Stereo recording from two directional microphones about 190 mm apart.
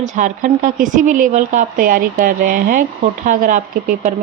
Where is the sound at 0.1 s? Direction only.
40° right (ahead or behind).